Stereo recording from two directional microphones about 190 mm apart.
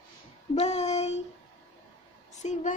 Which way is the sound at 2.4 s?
40° left (ahead or behind).